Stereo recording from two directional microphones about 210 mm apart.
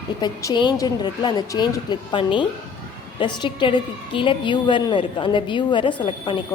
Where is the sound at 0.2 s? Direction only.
20° left (ahead or behind).